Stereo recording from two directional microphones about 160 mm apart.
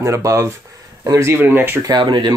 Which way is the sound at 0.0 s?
20° right (ahead or behind).